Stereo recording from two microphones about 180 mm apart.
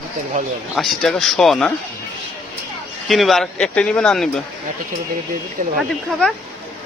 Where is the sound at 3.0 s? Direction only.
Centre (ahead or behind).